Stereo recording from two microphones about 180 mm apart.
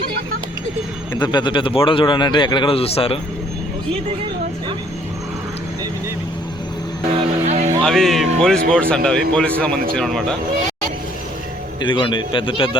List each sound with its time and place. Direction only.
1.1 s a man's voice: 25° left (ahead or behind)
7.4 s a sound: 40° right (ahead or behind)
7.9 s speech: centre (ahead or behind)
11.8 s a man's voice: 25° left (ahead or behind)